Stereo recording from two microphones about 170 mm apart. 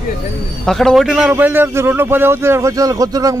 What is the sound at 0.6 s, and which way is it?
Speech, centre (ahead or behind).